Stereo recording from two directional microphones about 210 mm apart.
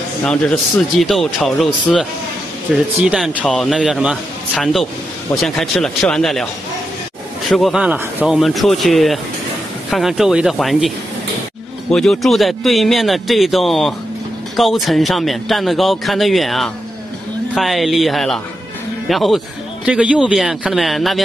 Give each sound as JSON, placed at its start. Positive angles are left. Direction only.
{"t": 0.2, "sound": "speech", "side_deg": 5}
{"t": 7.4, "sound": "speech", "side_deg": 0}
{"t": 11.9, "sound": "speech", "side_deg": 0}